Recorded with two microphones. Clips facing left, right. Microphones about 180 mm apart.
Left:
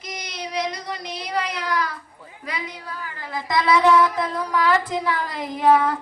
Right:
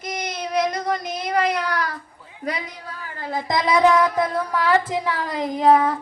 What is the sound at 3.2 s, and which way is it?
Child singing, 45° right (ahead or behind).